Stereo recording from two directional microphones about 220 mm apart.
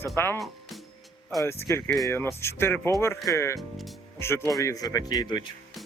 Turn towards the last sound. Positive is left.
turn(degrees=20)  # may be behind; listen again after turning